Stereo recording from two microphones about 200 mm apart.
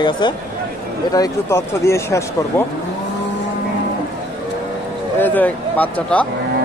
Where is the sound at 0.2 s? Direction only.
25° left (ahead or behind).